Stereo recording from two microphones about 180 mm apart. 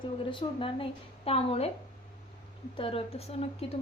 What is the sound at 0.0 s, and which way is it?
A woman's voice, 30° left (ahead or behind).